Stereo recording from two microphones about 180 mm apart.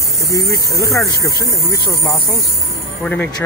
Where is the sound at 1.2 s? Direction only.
20° left (ahead or behind).